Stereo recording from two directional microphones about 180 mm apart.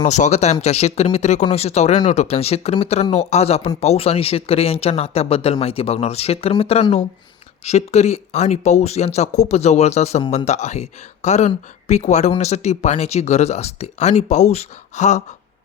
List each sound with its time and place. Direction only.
0.0 s speech: 40° left (ahead or behind)